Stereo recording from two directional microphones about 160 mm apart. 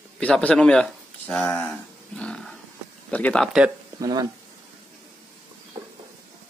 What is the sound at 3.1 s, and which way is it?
Speech, 10° left (ahead or behind).